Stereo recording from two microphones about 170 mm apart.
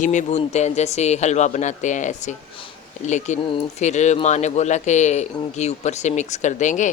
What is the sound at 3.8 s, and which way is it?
Speech, 45° left (ahead or behind).